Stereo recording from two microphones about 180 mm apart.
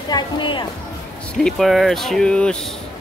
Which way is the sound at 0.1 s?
25° left (ahead or behind).